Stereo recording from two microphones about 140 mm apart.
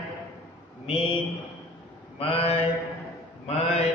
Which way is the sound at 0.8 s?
40° left (ahead or behind).